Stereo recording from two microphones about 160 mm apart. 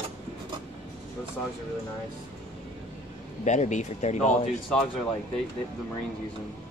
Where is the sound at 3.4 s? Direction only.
50° left (ahead or behind).